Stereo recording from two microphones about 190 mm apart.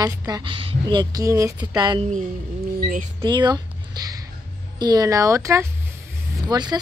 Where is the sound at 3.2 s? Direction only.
25° right (ahead or behind).